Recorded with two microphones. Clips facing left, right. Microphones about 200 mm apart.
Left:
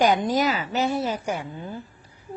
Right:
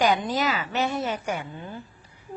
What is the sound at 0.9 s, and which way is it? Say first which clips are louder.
Speech: left 2 dB; 10° left (ahead or behind).